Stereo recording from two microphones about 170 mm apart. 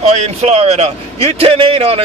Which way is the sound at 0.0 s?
40° right (ahead or behind).